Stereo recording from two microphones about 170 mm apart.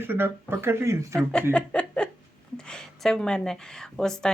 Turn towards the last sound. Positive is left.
turn(degrees=5)  # may be behind; listen again after turning